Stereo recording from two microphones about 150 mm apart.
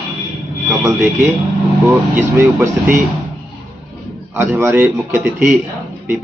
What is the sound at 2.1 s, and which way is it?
Speech, 15° right (ahead or behind).